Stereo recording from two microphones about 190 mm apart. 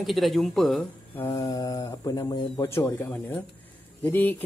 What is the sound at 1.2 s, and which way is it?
Speech, 20° left (ahead or behind).